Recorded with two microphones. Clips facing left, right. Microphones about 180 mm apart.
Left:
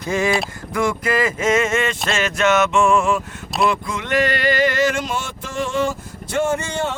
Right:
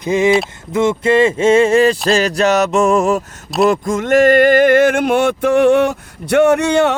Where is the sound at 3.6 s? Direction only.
45° right (ahead or behind).